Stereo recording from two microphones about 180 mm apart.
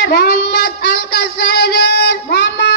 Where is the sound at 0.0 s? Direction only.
65° left (ahead or behind).